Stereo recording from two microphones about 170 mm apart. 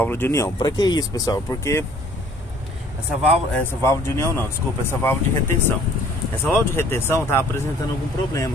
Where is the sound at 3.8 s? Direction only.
15° left (ahead or behind).